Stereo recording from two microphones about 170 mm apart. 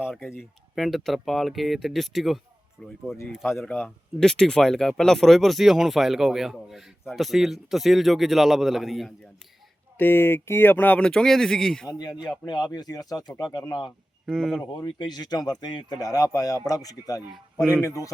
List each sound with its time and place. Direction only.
0.2 s speech: 10° left (ahead or behind)
0.8 s speech: centre (ahead or behind)
10.0 s speech: 15° left (ahead or behind)
11.9 s speech: 25° left (ahead or behind)
14.3 s speech: centre (ahead or behind)
14.6 s speech: 25° left (ahead or behind)